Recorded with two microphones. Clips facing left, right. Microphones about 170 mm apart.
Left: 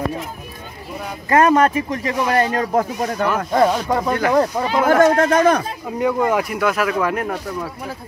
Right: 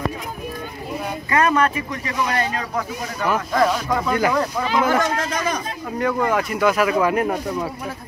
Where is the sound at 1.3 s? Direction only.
45° left (ahead or behind).